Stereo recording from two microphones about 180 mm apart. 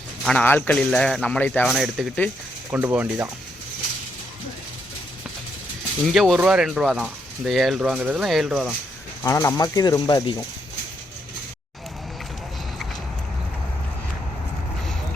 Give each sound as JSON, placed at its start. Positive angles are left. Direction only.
{"t": 0.3, "sound": "a man's voice", "side_deg": 10}
{"t": 6.1, "sound": "a man's voice", "side_deg": 0}
{"t": 9.2, "sound": "speech", "side_deg": 20}